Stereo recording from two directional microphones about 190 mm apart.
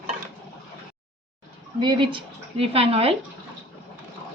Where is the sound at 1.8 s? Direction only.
25° right (ahead or behind).